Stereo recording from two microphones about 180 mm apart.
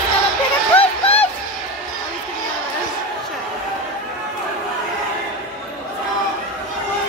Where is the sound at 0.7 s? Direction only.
35° left (ahead or behind).